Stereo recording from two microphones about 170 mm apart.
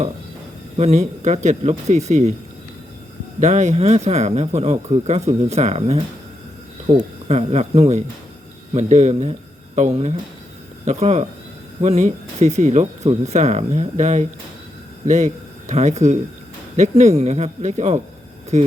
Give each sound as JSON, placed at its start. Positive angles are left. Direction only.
{"t": 0.8, "sound": "speech", "side_deg": -40}
{"t": 3.4, "sound": "speech", "side_deg": -45}